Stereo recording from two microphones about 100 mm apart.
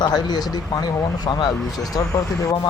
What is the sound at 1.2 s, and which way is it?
Speech, 40° left (ahead or behind).